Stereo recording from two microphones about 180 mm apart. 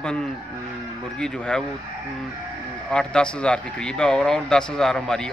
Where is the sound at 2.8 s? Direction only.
5° left (ahead or behind).